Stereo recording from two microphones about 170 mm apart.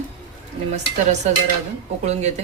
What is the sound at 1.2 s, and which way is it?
Speech, 40° right (ahead or behind).